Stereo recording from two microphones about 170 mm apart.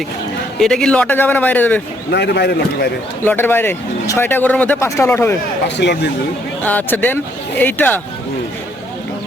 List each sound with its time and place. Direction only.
0.6 s speech: centre (ahead or behind)
2.1 s a man's voice: 80° left
3.2 s speech: 10° left (ahead or behind)
5.6 s speech: 80° left
6.6 s speech: 10° left (ahead or behind)